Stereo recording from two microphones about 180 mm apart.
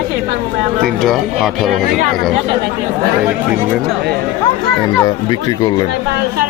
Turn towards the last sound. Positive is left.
turn(degrees=25)  # may be behind; listen again after turning